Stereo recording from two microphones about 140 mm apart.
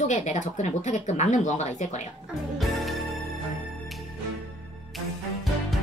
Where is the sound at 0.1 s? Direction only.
60° left (ahead or behind).